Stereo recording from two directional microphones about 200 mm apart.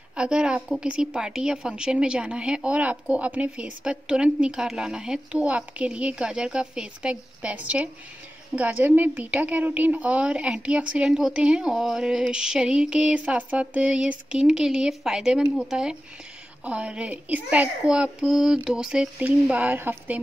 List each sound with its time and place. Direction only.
0.1 s a woman's voice: 5° right (ahead or behind)